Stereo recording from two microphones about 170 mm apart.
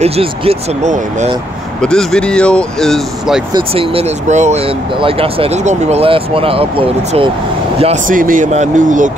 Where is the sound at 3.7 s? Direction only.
35° right (ahead or behind).